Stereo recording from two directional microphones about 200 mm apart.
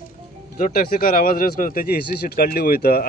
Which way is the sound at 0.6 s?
45° left (ahead or behind).